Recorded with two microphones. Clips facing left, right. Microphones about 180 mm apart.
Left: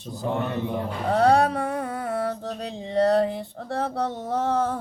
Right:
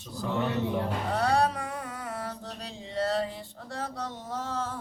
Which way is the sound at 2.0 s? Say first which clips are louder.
Left 10 dB; 65° left (ahead or behind).